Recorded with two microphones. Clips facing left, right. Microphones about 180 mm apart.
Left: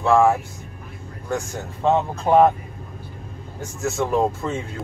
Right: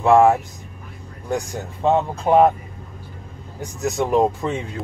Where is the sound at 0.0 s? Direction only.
20° right (ahead or behind).